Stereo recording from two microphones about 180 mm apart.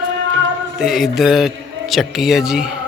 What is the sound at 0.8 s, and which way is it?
A man's voice, centre (ahead or behind).